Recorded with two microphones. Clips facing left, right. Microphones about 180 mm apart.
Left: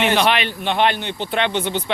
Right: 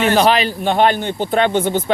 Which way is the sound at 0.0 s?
40° right (ahead or behind).